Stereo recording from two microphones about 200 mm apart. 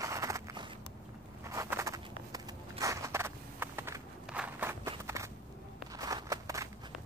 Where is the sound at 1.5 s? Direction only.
15° right (ahead or behind).